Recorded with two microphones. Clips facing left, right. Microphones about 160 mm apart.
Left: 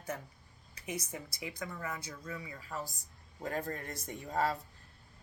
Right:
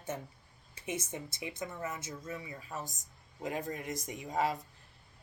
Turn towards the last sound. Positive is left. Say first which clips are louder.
# even
turn(degrees=-10)  # may be behind; listen again after turning